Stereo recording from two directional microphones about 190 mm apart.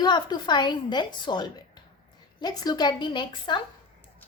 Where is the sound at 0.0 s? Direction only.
20° left (ahead or behind).